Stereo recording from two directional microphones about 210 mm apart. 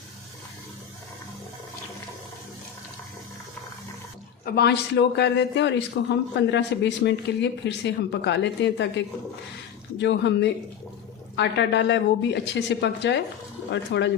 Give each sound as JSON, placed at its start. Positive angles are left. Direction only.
{"t": 4.4, "sound": "speech", "side_deg": 50}